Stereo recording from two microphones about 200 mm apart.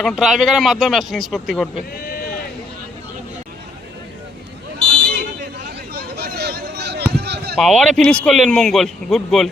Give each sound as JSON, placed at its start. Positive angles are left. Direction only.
{"t": 0.0, "sound": "a man's voice", "side_deg": 0}
{"t": 4.9, "sound": "a sound", "side_deg": -50}
{"t": 7.5, "sound": "a man's voice", "side_deg": 5}